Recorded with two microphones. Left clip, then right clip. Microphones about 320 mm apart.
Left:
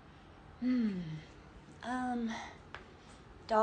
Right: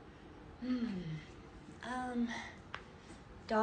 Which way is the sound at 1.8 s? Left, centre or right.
Centre.